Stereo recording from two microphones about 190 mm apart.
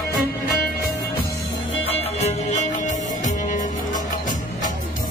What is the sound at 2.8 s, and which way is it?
Music, 40° left (ahead or behind).